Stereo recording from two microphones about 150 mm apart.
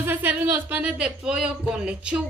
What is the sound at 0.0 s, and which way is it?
Speech, 10° right (ahead or behind).